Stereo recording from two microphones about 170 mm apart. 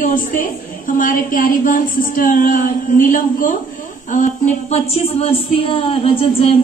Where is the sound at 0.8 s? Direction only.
50° left (ahead or behind).